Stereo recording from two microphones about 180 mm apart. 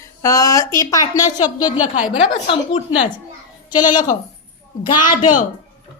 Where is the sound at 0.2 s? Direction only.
20° left (ahead or behind).